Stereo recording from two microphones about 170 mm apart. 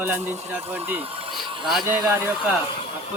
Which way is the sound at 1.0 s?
35° right (ahead or behind).